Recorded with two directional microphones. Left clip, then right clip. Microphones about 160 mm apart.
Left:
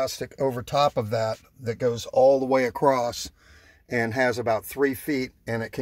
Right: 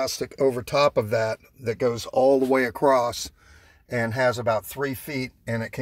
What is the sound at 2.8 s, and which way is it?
Speech, 20° left (ahead or behind).